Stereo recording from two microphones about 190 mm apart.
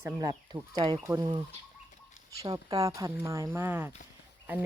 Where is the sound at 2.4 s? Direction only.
20° right (ahead or behind).